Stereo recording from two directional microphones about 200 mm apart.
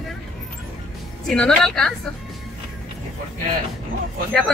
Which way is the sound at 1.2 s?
5° left (ahead or behind).